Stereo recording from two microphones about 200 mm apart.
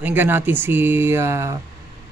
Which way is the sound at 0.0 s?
10° right (ahead or behind).